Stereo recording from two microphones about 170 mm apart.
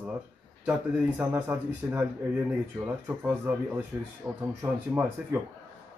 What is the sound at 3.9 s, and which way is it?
Speech, 20° right (ahead or behind).